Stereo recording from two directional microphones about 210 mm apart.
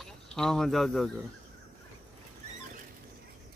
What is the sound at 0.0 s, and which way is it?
Speech, centre (ahead or behind).